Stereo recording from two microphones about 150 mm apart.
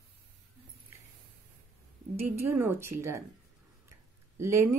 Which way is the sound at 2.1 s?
15° right (ahead or behind).